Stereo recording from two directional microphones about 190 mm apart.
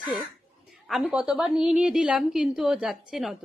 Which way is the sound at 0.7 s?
Centre (ahead or behind).